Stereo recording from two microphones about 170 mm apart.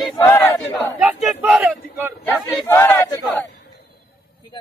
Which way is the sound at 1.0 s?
10° right (ahead or behind).